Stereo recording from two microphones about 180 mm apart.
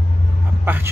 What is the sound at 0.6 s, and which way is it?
Speech, 10° right (ahead or behind).